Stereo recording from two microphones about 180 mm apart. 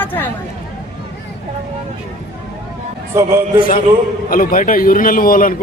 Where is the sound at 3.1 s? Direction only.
15° right (ahead or behind).